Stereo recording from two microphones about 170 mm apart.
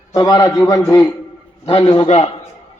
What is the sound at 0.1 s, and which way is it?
A man's voice, 25° left (ahead or behind).